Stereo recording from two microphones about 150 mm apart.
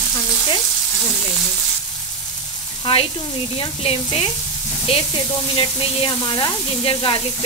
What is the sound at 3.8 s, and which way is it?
Speech, 40° left (ahead or behind).